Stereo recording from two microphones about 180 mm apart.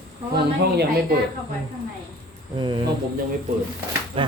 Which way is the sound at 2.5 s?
25° right (ahead or behind).